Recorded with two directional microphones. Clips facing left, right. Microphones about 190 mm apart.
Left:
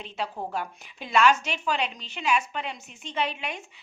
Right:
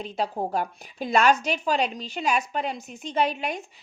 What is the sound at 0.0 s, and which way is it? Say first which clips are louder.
A woman's voice: right 5 dB; 40° right (ahead or behind).